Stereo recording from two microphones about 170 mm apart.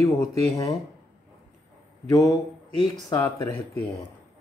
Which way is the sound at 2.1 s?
20° left (ahead or behind).